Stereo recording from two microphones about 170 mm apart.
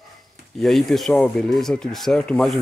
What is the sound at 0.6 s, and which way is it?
Speech, centre (ahead or behind).